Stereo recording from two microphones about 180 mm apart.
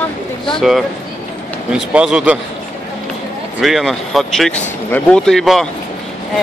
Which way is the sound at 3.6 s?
Centre (ahead or behind).